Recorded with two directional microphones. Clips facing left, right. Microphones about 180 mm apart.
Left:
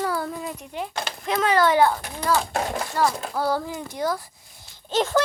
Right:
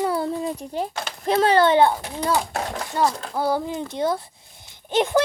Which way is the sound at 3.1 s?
10° left (ahead or behind).